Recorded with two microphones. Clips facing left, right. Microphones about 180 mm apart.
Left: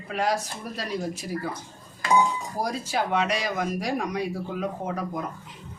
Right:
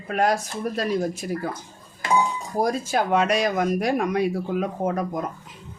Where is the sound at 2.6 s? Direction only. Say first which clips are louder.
Right 6 dB; 50° right (ahead or behind).